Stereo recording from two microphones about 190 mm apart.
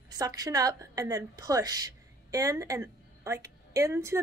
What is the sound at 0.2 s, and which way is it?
A woman's voice, 20° right (ahead or behind).